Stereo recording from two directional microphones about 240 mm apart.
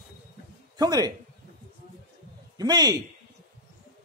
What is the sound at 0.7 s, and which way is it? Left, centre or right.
Speech, centre.